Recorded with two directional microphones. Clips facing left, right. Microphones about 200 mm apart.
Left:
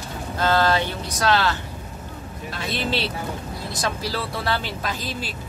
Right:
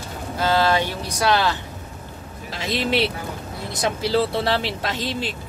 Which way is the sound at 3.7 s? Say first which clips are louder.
Right 7 dB; 20° right (ahead or behind).